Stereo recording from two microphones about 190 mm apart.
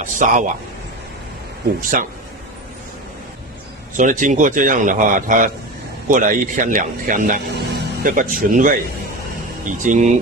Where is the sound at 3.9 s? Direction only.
40° right (ahead or behind).